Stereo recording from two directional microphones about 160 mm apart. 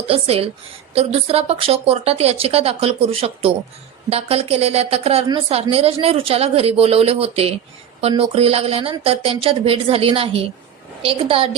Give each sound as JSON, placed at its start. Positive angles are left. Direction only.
{"t": 0.1, "sound": "a woman's voice", "side_deg": -35}